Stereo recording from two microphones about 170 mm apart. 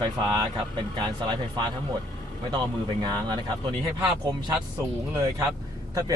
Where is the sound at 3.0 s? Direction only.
25° right (ahead or behind).